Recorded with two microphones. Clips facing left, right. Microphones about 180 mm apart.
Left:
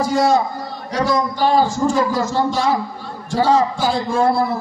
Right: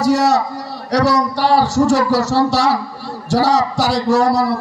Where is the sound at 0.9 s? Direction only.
75° right (ahead or behind).